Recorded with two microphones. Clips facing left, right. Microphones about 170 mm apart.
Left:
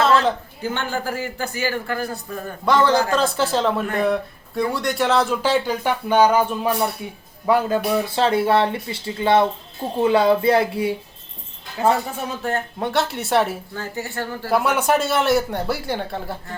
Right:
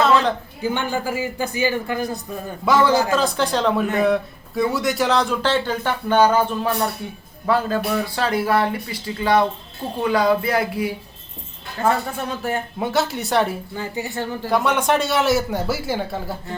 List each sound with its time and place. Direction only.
0.0 s a sound: centre (ahead or behind)
0.6 s a man's voice: 15° right (ahead or behind); by 10.9 s 30° left (ahead or behind)
11.8 s speech: 10° left (ahead or behind)
12.4 s speech: 5° right (ahead or behind)
13.7 s a man's voice: 15° right (ahead or behind)
14.5 s speech: 5° left (ahead or behind)